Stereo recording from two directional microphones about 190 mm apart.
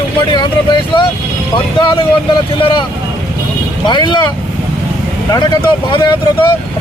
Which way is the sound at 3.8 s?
25° left (ahead or behind).